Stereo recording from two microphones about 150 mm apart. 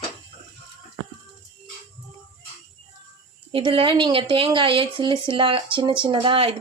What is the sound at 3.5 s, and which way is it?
Speech, 35° right (ahead or behind).